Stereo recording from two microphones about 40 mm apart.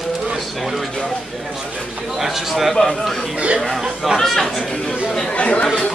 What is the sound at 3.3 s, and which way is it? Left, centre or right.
Speech, right.